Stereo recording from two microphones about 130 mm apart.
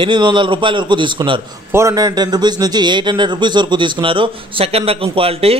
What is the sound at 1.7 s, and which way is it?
A man's voice, 20° right (ahead or behind).